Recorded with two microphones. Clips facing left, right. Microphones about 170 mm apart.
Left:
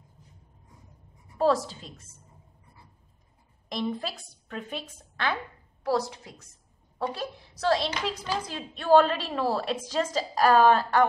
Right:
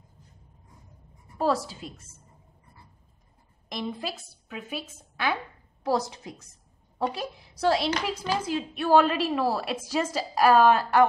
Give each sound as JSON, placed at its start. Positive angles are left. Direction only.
{"t": 1.4, "sound": "a woman's voice", "side_deg": -5}
{"t": 3.6, "sound": "a woman's voice", "side_deg": 0}
{"t": 5.9, "sound": "a woman's voice", "side_deg": -20}